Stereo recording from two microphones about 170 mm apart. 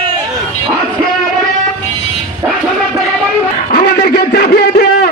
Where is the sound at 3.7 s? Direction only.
70° left (ahead or behind).